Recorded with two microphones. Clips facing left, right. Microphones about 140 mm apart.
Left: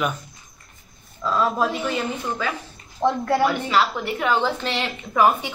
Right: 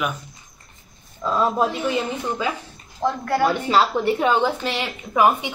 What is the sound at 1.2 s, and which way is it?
Speech, 20° right (ahead or behind).